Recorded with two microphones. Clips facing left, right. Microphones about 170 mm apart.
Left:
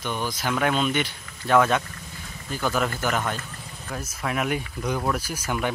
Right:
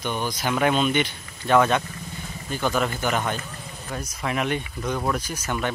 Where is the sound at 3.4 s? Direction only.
5° right (ahead or behind).